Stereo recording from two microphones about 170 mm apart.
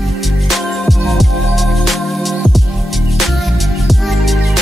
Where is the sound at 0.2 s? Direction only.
Centre (ahead or behind).